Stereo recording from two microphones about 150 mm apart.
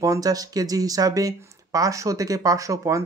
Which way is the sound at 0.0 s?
25° right (ahead or behind).